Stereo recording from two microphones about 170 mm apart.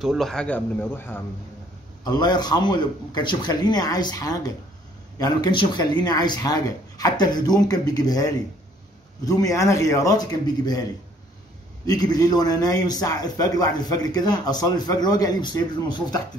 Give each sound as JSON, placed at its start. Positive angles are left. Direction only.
{"t": 0.0, "sound": "speech", "side_deg": 0}
{"t": 2.0, "sound": "a man's voice", "side_deg": 25}
{"t": 11.8, "sound": "a man's voice", "side_deg": 25}